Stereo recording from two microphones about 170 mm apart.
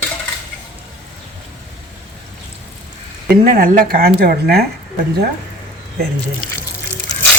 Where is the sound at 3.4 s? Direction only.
55° right (ahead or behind).